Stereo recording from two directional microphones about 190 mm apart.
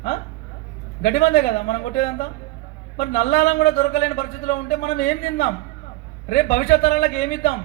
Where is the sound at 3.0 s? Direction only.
40° left (ahead or behind).